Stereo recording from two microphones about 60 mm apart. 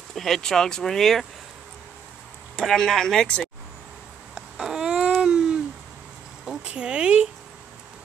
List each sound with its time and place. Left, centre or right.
0.1 s speech: centre
2.6 s speech: centre
4.6 s a sound: centre
6.6 s speech: centre